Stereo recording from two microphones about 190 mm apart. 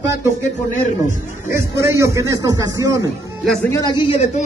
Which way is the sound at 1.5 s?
15° right (ahead or behind).